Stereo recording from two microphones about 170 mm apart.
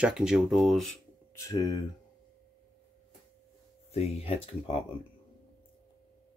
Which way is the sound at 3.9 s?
35° left (ahead or behind).